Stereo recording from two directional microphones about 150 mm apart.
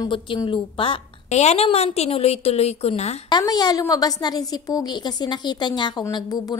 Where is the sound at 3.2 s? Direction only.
25° left (ahead or behind).